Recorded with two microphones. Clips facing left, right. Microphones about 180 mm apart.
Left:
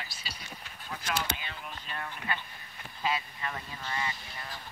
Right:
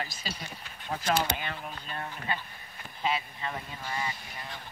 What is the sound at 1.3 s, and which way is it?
Speech, 55° right (ahead or behind).